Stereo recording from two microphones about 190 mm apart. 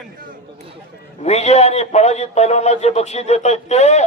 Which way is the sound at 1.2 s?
35° left (ahead or behind).